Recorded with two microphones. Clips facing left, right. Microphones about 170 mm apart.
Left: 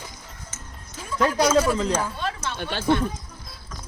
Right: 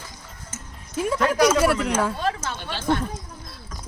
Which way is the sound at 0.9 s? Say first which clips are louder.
Right 2 dB; 75° right (ahead or behind).